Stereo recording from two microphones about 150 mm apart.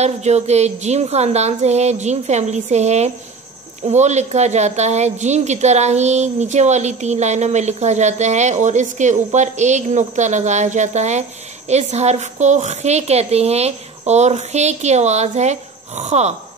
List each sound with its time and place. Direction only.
0.0 s a woman's voice: 50° right (ahead or behind)